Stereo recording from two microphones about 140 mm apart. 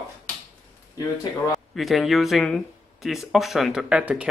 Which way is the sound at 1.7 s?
Centre (ahead or behind).